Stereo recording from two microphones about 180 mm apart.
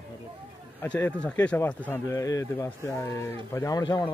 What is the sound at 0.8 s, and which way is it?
Speech, 5° left (ahead or behind).